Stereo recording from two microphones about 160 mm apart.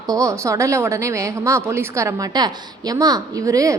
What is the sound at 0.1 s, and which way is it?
A woman's voice, 20° right (ahead or behind).